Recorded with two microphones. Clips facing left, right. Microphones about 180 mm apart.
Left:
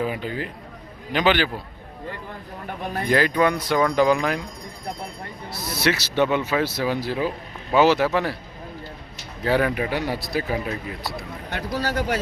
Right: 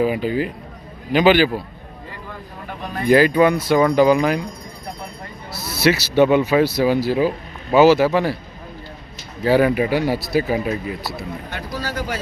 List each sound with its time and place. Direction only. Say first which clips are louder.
0.0 s speech: right 7 dB; 10° right (ahead or behind)
3.1 s speech: right 6 dB; 10° right (ahead or behind)
5.8 s speech: right 6 dB; 10° right (ahead or behind)
9.4 s speech: right 6 dB; 5° right (ahead or behind)
11.5 s speech: left 4 dB; 60° left (ahead or behind)